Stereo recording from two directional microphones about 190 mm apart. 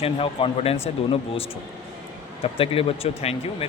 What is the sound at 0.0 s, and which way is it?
Speech, 30° left (ahead or behind).